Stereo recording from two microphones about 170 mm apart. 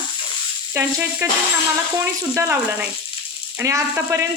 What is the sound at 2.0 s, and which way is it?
Speech, 15° right (ahead or behind).